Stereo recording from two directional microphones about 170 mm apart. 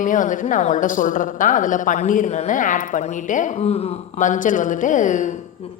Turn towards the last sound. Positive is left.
turn(degrees=50)  # may be behind; listen again after turning